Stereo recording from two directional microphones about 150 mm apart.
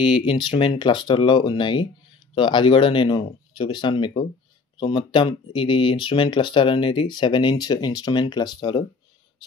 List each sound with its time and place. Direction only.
0.2 s speech: 30° left (ahead or behind)